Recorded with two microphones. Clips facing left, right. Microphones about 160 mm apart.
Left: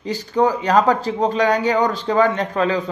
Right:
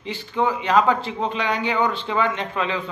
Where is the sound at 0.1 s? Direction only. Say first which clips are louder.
Left 5 dB; 40° left (ahead or behind).